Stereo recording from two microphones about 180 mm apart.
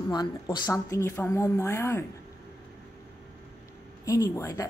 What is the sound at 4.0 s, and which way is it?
Speech, 20° left (ahead or behind).